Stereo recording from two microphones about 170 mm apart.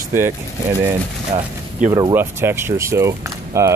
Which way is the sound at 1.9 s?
15° right (ahead or behind).